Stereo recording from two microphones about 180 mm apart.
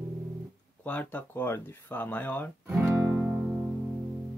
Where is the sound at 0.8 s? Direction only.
10° left (ahead or behind).